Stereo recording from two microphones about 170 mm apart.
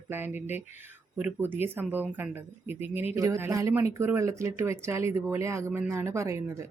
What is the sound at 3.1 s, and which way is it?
Speech, 20° right (ahead or behind).